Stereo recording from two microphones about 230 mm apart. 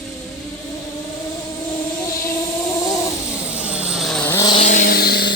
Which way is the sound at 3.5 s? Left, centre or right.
Centre.